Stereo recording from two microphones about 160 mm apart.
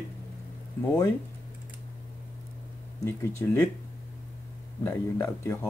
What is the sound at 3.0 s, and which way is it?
Speech, 20° left (ahead or behind).